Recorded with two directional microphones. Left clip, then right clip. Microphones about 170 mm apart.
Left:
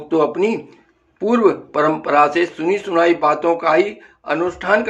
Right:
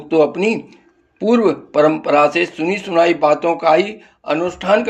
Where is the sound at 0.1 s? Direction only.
25° right (ahead or behind).